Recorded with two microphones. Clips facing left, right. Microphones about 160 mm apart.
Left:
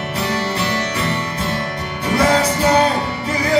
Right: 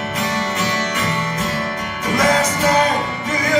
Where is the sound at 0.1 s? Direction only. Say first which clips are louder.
Left 2 dB; 30° left (ahead or behind).